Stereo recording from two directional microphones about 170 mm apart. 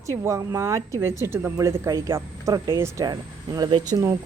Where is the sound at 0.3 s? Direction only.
15° right (ahead or behind).